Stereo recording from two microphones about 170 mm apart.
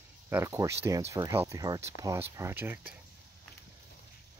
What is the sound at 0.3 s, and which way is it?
Speech, 15° right (ahead or behind).